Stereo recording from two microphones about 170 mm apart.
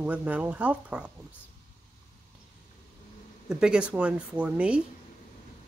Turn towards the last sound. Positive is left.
turn(degrees=-5)  # may be behind; listen again after turning